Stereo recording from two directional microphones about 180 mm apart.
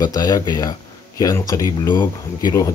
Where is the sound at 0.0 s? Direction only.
20° left (ahead or behind).